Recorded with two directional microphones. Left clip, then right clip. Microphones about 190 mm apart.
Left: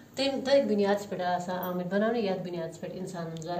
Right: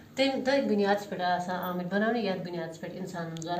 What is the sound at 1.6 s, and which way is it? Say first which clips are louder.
A woman's voice: left 1 dB; 25° left (ahead or behind).